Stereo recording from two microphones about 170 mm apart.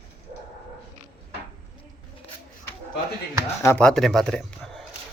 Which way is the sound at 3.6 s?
15° left (ahead or behind).